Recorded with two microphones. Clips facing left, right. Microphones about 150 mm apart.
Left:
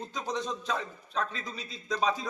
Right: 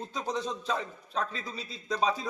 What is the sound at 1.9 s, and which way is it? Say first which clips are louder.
Speech: even; 5° right (ahead or behind).